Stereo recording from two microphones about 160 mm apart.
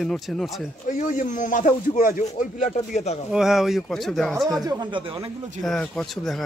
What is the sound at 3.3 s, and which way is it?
A man's voice, centre (ahead or behind).